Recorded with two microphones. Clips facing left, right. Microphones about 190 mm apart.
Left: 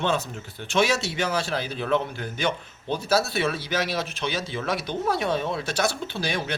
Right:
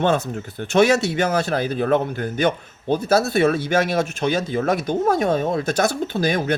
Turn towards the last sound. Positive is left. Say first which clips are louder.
# right 8 dB
turn(degrees=-45)  # may be behind; listen again after turning